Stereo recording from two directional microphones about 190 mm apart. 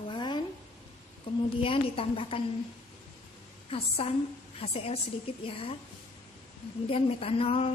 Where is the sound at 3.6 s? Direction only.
30° left (ahead or behind).